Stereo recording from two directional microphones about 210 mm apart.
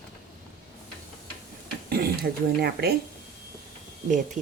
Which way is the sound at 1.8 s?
45° right (ahead or behind).